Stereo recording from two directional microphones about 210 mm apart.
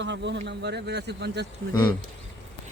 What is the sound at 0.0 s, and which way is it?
Speech, 55° right (ahead or behind).